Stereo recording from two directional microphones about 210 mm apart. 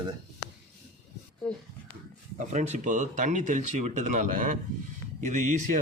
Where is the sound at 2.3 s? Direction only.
35° right (ahead or behind).